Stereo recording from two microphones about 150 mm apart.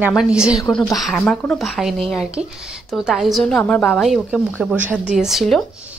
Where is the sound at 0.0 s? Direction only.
5° right (ahead or behind).